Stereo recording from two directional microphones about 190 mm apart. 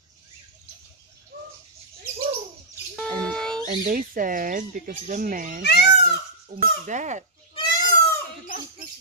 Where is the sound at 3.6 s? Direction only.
45° right (ahead or behind).